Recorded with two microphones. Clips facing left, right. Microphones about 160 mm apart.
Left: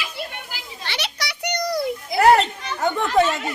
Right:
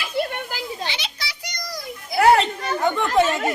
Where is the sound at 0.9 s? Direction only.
65° left (ahead or behind).